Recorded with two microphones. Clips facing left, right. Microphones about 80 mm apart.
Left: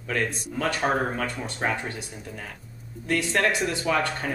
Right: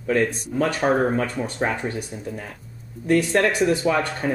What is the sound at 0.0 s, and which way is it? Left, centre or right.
Speech, right.